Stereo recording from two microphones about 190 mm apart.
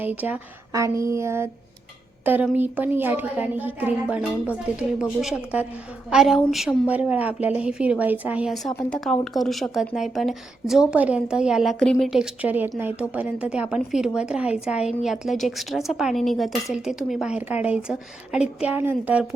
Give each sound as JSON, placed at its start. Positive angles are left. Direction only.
{"t": 0.0, "sound": "a woman's voice", "side_deg": -10}
{"t": 8.7, "sound": "speech", "side_deg": 5}